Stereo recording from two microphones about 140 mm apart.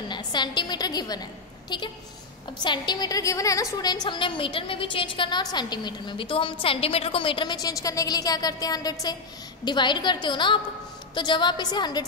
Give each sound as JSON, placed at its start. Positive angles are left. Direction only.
{"t": 0.1, "sound": "a woman's voice", "side_deg": 35}